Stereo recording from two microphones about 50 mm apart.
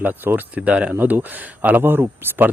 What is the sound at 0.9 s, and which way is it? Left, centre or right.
Speech, right.